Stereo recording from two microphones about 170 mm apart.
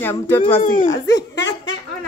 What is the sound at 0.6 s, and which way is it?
Speech, 50° left (ahead or behind).